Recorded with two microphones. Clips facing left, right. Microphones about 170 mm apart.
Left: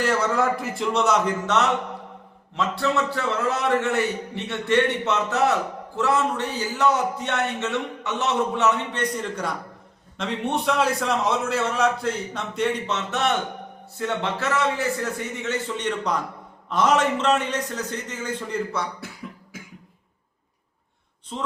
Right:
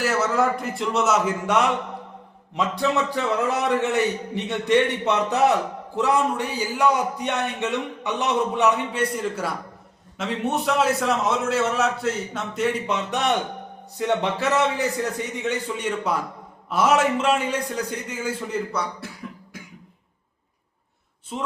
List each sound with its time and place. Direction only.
0.0 s a man's voice: 5° right (ahead or behind)
12.9 s speech: 15° right (ahead or behind)
21.3 s speech: 10° right (ahead or behind)